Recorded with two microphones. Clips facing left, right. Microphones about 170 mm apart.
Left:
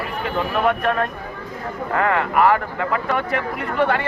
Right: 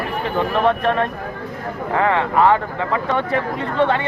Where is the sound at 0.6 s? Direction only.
30° right (ahead or behind).